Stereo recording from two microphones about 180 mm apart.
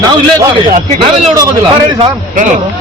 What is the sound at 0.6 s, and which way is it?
Speech, 45° right (ahead or behind).